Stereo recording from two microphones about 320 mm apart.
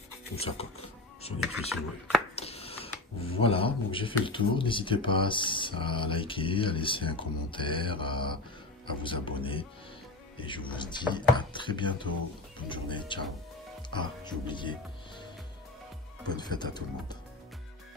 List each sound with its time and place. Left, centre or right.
1.4 s speech: centre
2.3 s speech: centre
16.3 s speech: centre